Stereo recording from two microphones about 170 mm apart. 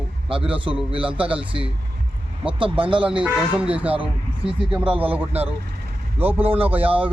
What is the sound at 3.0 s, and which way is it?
Speech, 5° right (ahead or behind).